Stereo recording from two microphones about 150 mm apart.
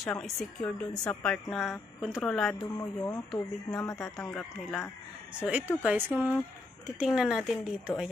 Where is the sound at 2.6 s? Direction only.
25° left (ahead or behind).